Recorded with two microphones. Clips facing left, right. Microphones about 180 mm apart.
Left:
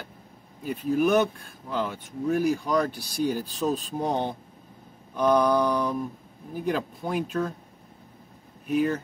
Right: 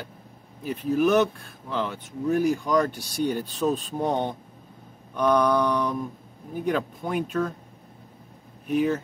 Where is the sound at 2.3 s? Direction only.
5° left (ahead or behind).